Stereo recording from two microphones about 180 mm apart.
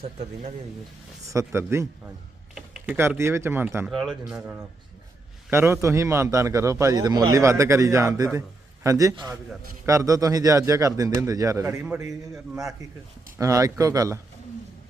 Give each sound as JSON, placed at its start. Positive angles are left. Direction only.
{"t": 1.3, "sound": "a man's voice", "side_deg": -15}
{"t": 12.3, "sound": "a man's voice", "side_deg": -5}
{"t": 13.4, "sound": "speech", "side_deg": -20}